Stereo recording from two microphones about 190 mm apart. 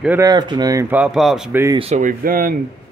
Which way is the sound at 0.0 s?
10° right (ahead or behind).